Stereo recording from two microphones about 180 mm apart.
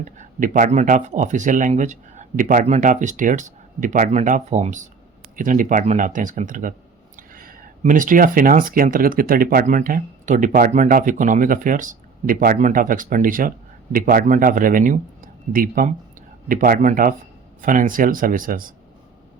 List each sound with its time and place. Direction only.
0.0 s speech: 45° right (ahead or behind)